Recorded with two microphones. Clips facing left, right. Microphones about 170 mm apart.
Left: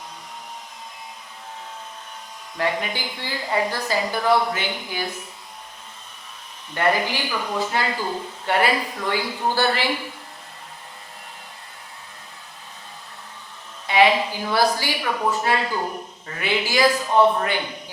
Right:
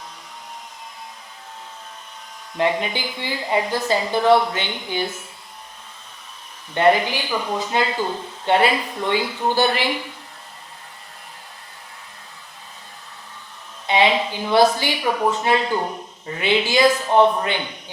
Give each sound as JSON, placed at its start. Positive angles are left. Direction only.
{"t": 2.6, "sound": "a woman's voice", "side_deg": -20}
{"t": 6.7, "sound": "a woman's voice", "side_deg": -20}
{"t": 13.8, "sound": "a sound", "side_deg": -25}
{"t": 14.3, "sound": "a woman's voice", "side_deg": -20}